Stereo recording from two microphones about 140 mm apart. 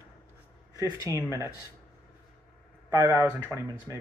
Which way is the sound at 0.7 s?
25° right (ahead or behind).